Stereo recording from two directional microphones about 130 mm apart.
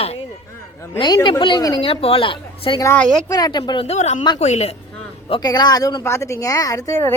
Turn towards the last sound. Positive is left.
turn(degrees=25)  # may be behind; listen again after turning